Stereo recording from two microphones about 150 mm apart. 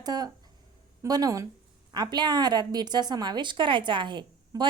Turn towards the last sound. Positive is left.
turn(degrees=-30)  # may be behind; listen again after turning